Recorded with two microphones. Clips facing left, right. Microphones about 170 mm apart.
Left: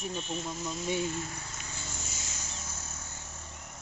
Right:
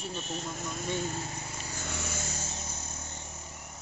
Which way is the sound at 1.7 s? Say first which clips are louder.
Right 9 dB; 65° right (ahead or behind).